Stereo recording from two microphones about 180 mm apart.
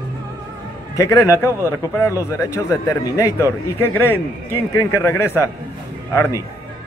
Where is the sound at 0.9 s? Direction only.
20° left (ahead or behind).